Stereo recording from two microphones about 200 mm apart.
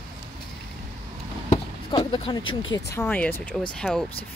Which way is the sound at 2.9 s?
10° left (ahead or behind).